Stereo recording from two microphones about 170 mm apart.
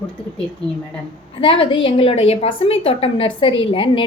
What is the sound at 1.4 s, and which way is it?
A woman's voice, 30° left (ahead or behind).